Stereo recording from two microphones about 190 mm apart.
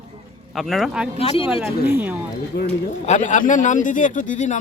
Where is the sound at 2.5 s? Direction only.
55° left (ahead or behind).